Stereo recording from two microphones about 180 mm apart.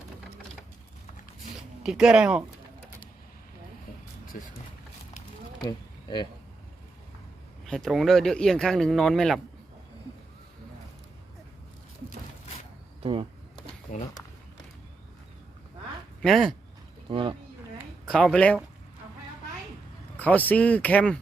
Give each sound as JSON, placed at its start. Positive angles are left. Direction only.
{"t": 1.5, "sound": "speech", "side_deg": 0}
{"t": 5.6, "sound": "bee", "side_deg": 25}
{"t": 7.6, "sound": "speech", "side_deg": 0}
{"t": 13.0, "sound": "speech", "side_deg": -30}
{"t": 13.9, "sound": "speech", "side_deg": 45}
{"t": 16.2, "sound": "speech", "side_deg": 0}
{"t": 17.1, "sound": "speech", "side_deg": -30}
{"t": 18.0, "sound": "speech", "side_deg": 0}
{"t": 20.1, "sound": "speech", "side_deg": 10}